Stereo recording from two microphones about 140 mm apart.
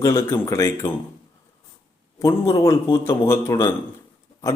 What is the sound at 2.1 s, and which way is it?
Speech, 25° left (ahead or behind).